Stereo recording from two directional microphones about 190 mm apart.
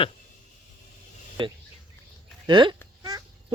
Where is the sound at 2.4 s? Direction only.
25° right (ahead or behind).